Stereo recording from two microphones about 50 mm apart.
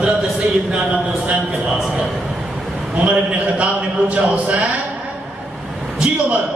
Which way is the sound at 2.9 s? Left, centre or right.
Right.